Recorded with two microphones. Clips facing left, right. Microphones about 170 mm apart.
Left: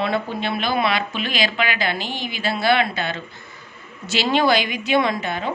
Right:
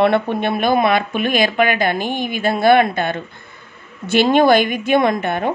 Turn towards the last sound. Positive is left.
turn(degrees=-55)  # may be behind; listen again after turning